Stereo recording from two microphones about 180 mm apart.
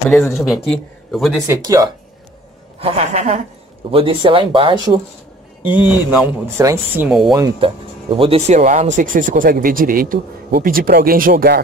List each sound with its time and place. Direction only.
0.3 s a man's voice: centre (ahead or behind)
1.5 s speech: 20° right (ahead or behind)
2.8 s a woman's voice: 35° right (ahead or behind)
5.7 s a man's voice: 25° left (ahead or behind)
6.0 s speech: 10° right (ahead or behind)
7.1 s speech: centre (ahead or behind)
7.6 s speech: 30° right (ahead or behind); by 11.6 s 55° right (ahead or behind)